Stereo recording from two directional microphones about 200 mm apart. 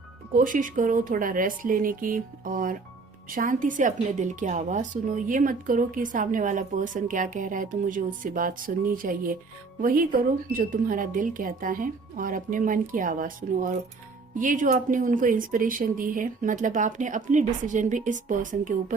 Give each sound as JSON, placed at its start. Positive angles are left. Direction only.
{"t": 0.3, "sound": "speech", "side_deg": -40}